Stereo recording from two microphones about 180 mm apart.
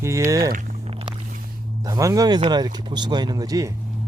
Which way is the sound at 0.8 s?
30° right (ahead or behind).